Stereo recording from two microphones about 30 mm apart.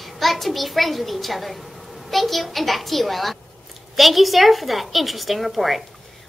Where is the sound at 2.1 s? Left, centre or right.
Centre.